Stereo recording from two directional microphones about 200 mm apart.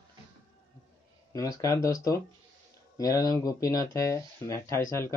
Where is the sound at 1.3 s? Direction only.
15° left (ahead or behind).